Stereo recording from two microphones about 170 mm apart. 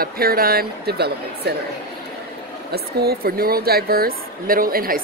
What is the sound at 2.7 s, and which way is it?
Speech, 65° right (ahead or behind).